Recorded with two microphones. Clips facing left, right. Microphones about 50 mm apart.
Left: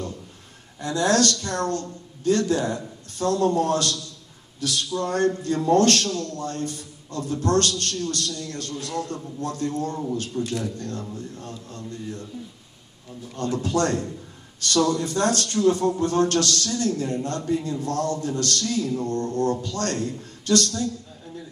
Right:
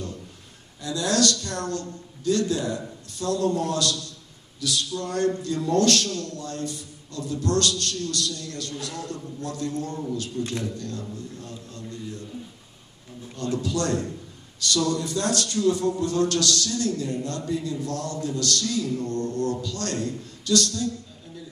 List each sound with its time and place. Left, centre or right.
0.7 s a man's voice: left
13.4 s a man's voice: left